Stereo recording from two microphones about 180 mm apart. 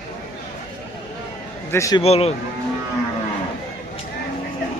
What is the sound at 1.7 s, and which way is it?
Speech, 20° left (ahead or behind).